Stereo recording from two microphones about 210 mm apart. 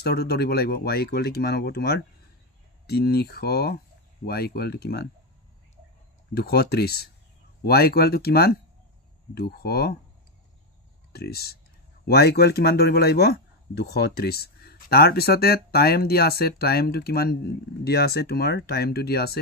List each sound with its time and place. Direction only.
0.0 s speech: 50° left (ahead or behind)
6.3 s speech: 50° left (ahead or behind)
11.1 s speech: 50° left (ahead or behind)